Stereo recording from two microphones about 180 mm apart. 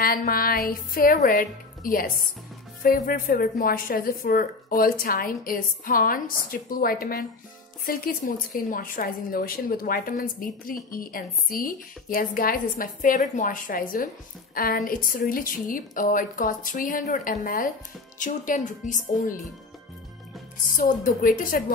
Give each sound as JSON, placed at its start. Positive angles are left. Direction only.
{"t": 0.0, "sound": "a woman's voice", "side_deg": 55}
{"t": 20.7, "sound": "a woman's voice", "side_deg": 50}